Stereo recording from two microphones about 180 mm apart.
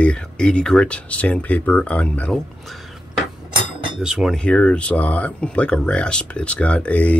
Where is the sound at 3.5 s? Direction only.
25° right (ahead or behind).